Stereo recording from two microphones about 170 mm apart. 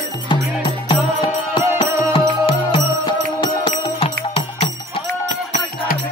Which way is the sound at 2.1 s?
35° left (ahead or behind).